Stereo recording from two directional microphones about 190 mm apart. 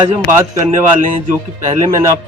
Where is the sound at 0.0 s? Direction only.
35° right (ahead or behind).